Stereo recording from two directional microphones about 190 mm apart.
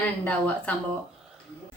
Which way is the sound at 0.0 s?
5° left (ahead or behind).